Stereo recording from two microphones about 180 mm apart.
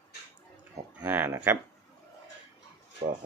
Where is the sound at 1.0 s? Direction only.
10° right (ahead or behind).